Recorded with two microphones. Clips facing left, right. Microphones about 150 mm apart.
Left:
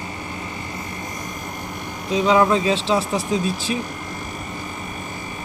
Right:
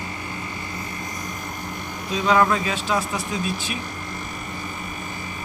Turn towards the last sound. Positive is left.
turn(degrees=30)  # may be behind; listen again after turning